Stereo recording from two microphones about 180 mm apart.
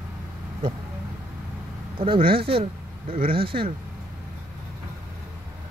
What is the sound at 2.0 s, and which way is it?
Speech, 30° right (ahead or behind).